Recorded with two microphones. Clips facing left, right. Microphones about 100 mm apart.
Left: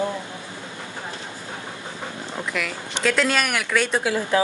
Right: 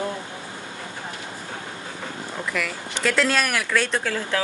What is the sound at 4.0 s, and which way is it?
Speech, 15° left (ahead or behind).